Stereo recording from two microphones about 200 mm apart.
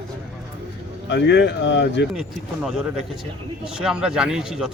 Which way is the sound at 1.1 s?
55° left (ahead or behind).